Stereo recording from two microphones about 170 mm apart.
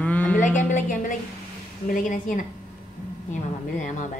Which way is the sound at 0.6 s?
50° left (ahead or behind).